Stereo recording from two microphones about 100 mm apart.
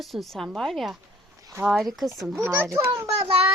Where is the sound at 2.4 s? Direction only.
25° right (ahead or behind).